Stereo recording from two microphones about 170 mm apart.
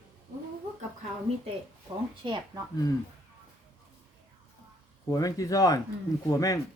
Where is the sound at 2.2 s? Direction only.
25° right (ahead or behind).